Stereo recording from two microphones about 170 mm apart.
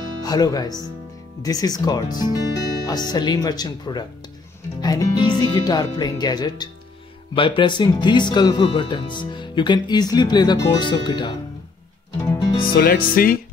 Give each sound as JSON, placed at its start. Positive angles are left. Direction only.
{"t": 0.2, "sound": "speech", "side_deg": 20}
{"t": 12.7, "sound": "music", "side_deg": 60}